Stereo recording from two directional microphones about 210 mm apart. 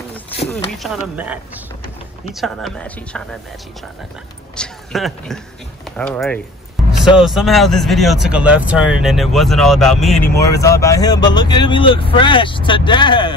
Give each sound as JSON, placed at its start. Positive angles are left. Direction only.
{"t": 0.7, "sound": "speech", "side_deg": -5}
{"t": 4.6, "sound": "speech", "side_deg": 0}
{"t": 10.4, "sound": "speech", "side_deg": 15}